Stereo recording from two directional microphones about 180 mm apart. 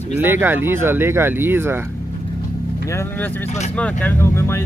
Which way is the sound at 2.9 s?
15° left (ahead or behind).